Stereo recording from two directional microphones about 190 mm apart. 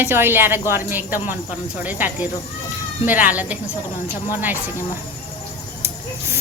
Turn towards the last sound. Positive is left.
turn(degrees=-15)  # may be behind; listen again after turning